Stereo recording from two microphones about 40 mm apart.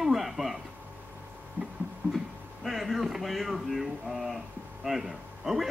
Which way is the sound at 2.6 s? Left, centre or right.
Centre.